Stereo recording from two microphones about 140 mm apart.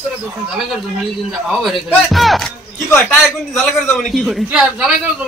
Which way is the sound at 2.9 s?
10° left (ahead or behind).